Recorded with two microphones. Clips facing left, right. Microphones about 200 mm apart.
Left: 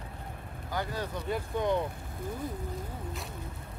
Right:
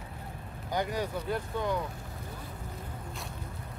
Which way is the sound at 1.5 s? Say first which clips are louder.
Left 4 dB; 20° left (ahead or behind).